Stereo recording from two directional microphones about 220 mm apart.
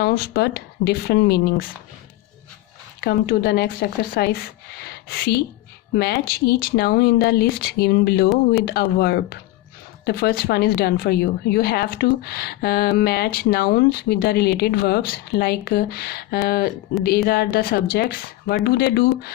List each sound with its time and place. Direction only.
0.0 s speech: 45° left (ahead or behind)
3.0 s speech: 45° left (ahead or behind)